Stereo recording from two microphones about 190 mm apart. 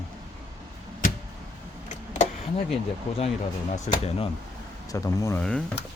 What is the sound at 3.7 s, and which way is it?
Speech, 40° left (ahead or behind).